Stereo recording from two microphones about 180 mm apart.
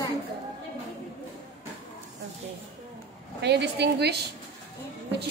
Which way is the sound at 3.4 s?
70° right (ahead or behind).